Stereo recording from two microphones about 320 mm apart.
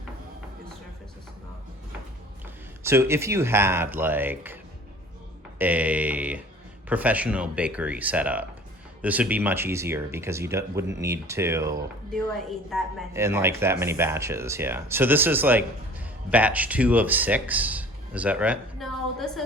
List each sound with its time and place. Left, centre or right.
2.8 s speech: centre
5.5 s speech: centre
12.7 s speech: centre